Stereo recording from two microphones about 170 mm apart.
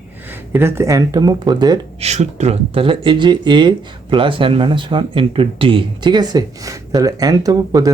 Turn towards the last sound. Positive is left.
turn(degrees=-20)  # may be behind; listen again after turning